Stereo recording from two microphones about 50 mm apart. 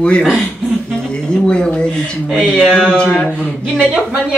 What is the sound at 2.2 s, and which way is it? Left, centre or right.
Speech, centre.